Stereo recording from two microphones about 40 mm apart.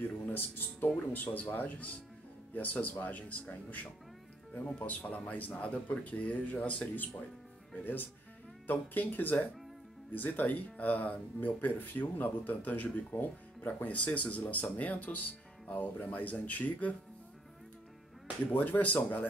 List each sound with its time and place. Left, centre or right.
0.0 s music: left
1.1 s speech: left
7.8 s speech: left
13.7 s speech: left
18.5 s speech: left